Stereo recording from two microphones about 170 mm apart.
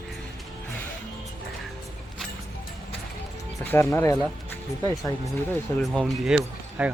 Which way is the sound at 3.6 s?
10° left (ahead or behind).